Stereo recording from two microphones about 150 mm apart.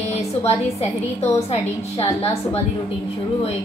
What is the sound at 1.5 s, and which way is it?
A woman's voice, 45° left (ahead or behind).